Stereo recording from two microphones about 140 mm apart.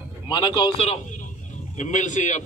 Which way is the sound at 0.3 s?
35° left (ahead or behind).